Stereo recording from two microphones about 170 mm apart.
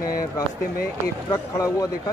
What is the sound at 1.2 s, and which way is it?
Speech, 20° left (ahead or behind).